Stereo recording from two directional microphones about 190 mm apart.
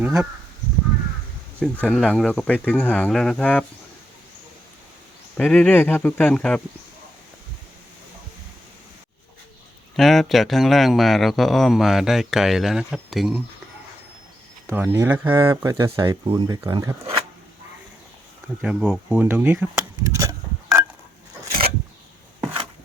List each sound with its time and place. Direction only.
0.0 s speech: 15° right (ahead or behind)
1.8 s speech: 5° left (ahead or behind)
5.4 s speech: 5° left (ahead or behind)
9.9 s speech: centre (ahead or behind)
14.7 s speech: 10° right (ahead or behind)
18.6 s speech: 5° right (ahead or behind)